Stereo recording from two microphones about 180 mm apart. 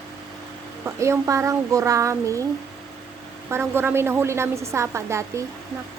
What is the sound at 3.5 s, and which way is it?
A woman's voice, 10° right (ahead or behind).